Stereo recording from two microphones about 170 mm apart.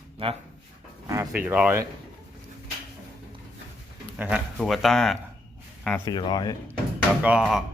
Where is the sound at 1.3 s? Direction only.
10° right (ahead or behind).